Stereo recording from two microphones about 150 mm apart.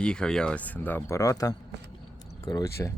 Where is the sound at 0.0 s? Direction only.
5° left (ahead or behind).